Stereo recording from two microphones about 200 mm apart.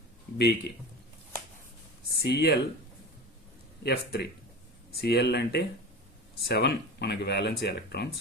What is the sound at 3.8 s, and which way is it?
Speech, 55° left (ahead or behind).